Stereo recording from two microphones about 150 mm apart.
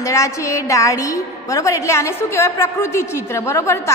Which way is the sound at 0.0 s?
20° left (ahead or behind).